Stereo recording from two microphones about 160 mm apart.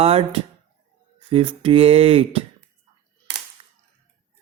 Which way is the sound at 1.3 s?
35° right (ahead or behind).